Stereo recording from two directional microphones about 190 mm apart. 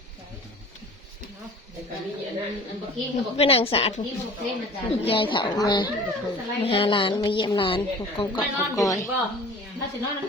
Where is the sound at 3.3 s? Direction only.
30° left (ahead or behind).